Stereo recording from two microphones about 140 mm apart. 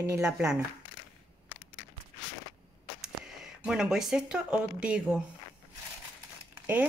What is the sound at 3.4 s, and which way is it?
Speech, 5° right (ahead or behind).